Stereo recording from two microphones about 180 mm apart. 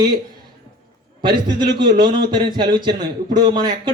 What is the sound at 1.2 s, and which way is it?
Speech, 25° right (ahead or behind).